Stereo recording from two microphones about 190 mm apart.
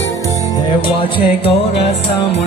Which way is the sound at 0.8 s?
30° left (ahead or behind).